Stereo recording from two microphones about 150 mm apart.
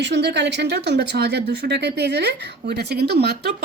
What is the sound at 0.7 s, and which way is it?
Speech, 90° right.